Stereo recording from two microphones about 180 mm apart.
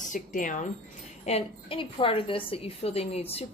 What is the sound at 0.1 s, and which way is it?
Speech, 45° left (ahead or behind).